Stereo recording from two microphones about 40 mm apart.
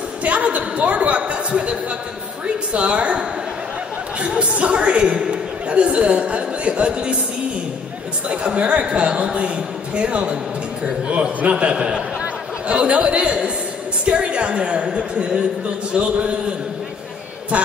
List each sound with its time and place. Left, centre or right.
0.2 s a woman's voice: right
8.3 s a woman's voice: right
11.7 s speech: centre
12.2 s a man's voice: right